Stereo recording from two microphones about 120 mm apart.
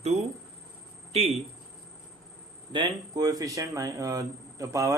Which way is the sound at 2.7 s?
35° right (ahead or behind).